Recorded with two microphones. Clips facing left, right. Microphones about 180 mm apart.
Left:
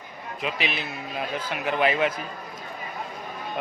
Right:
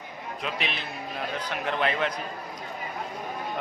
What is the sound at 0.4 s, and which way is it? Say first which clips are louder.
A man's voice: left 4 dB; 5° left (ahead or behind).